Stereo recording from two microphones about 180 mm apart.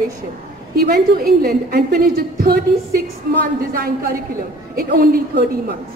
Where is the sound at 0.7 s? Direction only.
60° right (ahead or behind).